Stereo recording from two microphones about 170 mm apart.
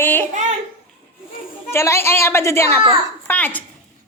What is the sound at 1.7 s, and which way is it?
Speech, 15° left (ahead or behind).